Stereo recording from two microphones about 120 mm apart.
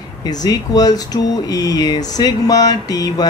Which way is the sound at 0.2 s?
35° left (ahead or behind).